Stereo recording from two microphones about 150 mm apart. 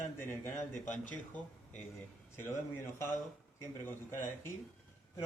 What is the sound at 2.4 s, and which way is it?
Speech, 15° left (ahead or behind).